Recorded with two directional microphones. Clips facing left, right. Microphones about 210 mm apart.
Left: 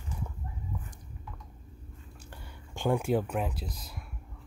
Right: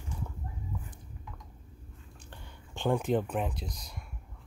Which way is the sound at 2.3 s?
10° left (ahead or behind).